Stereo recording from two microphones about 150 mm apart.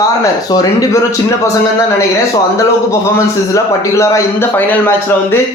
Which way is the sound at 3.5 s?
20° left (ahead or behind).